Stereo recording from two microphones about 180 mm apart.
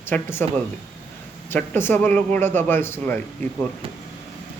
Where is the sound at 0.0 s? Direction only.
10° left (ahead or behind).